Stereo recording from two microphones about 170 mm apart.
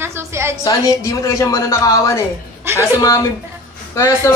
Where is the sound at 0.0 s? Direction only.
15° right (ahead or behind).